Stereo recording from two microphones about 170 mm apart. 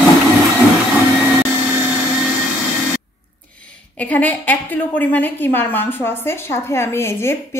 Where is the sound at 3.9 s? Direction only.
10° left (ahead or behind).